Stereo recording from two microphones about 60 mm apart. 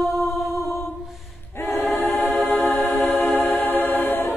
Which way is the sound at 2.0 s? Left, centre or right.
Left.